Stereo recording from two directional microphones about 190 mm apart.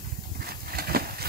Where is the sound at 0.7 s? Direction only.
55° right (ahead or behind).